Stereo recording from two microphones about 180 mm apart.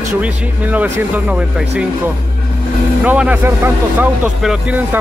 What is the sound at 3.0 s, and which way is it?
Speech, 5° right (ahead or behind).